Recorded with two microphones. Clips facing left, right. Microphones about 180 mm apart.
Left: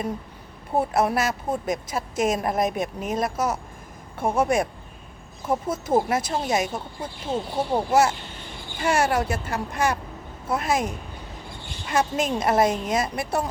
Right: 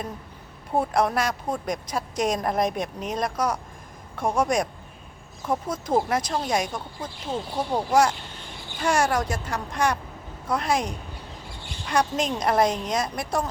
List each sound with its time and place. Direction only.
0.8 s speech: 5° left (ahead or behind)